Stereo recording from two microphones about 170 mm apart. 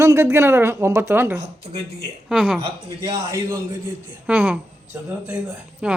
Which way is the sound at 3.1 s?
20° right (ahead or behind).